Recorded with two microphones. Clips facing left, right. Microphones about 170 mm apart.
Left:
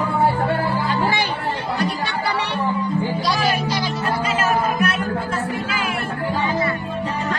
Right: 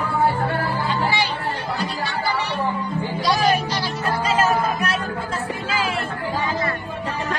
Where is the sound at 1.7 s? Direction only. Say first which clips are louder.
Left 3 dB; 60° left (ahead or behind).